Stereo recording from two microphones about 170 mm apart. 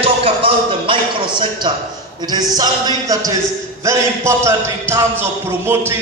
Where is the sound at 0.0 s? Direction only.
35° right (ahead or behind).